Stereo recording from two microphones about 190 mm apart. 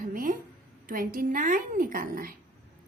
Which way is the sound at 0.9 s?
50° right (ahead or behind).